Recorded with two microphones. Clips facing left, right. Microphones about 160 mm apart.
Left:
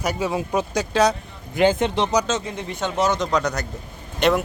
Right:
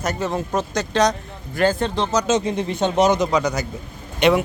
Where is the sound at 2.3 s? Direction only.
20° right (ahead or behind); by 4.4 s centre (ahead or behind).